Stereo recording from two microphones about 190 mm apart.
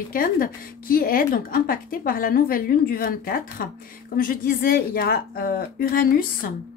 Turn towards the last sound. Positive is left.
turn(degrees=50)  # may be behind; listen again after turning